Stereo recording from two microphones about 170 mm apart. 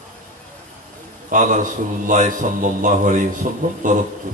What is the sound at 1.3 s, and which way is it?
A man's voice, 50° right (ahead or behind).